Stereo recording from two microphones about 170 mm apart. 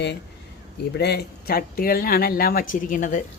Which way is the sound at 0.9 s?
70° left (ahead or behind).